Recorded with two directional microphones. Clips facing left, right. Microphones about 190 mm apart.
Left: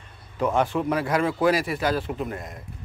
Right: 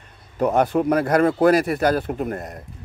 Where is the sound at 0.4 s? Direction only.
40° right (ahead or behind).